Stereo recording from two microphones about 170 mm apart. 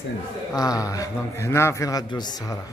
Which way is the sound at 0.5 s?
20° left (ahead or behind).